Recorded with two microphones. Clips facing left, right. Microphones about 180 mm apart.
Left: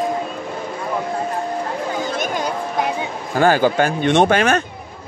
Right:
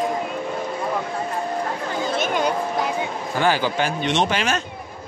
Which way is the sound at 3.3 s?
45° left (ahead or behind).